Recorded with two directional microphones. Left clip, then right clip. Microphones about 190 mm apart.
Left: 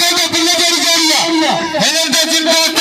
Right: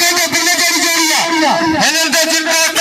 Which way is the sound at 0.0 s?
65° left (ahead or behind).